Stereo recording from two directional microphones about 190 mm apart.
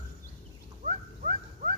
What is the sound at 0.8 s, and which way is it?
Dog, 45° right (ahead or behind).